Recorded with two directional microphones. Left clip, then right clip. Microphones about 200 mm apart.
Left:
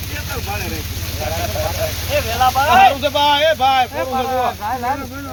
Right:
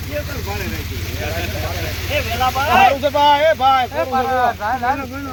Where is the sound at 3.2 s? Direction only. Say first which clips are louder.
Right 3 dB; centre (ahead or behind).